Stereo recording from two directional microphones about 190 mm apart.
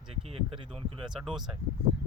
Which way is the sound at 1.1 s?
5° right (ahead or behind).